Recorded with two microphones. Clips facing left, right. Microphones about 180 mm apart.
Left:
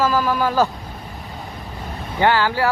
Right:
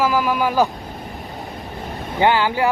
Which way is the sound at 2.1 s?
15° right (ahead or behind).